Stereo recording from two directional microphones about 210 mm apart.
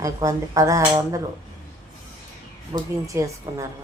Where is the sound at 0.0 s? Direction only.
15° right (ahead or behind).